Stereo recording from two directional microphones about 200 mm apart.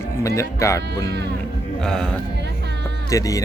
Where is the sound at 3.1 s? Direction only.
15° left (ahead or behind).